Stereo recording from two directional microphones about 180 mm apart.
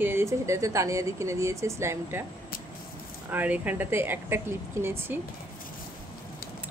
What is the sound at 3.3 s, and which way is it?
Speech, 10° right (ahead or behind).